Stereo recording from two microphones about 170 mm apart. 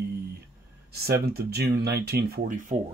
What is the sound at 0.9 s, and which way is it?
Speech, 65° right (ahead or behind).